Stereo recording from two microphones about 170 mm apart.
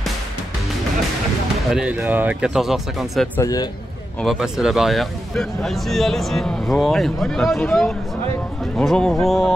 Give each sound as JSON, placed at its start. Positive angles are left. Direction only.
{"t": 1.7, "sound": "a man's voice", "side_deg": -5}
{"t": 3.3, "sound": "a man's voice", "side_deg": 20}
{"t": 4.2, "sound": "a man's voice", "side_deg": 0}